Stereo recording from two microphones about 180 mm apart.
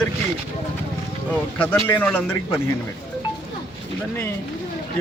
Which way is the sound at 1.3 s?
10° left (ahead or behind).